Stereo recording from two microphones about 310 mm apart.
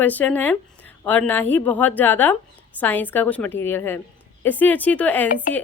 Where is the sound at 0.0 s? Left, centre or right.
Centre.